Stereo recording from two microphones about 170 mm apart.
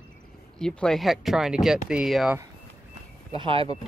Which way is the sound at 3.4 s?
30° right (ahead or behind).